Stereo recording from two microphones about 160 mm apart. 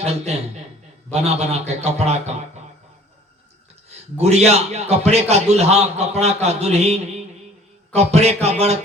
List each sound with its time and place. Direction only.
0.0 s a man's voice: 40° right (ahead or behind)
4.2 s a man's voice: 45° right (ahead or behind)